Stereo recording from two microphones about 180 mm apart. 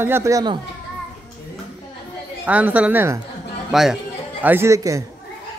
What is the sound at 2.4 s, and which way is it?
Speech, 10° right (ahead or behind).